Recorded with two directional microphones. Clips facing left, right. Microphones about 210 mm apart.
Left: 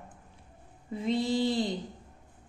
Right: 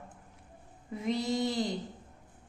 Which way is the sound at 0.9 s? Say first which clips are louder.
Left 3 dB; 30° left (ahead or behind).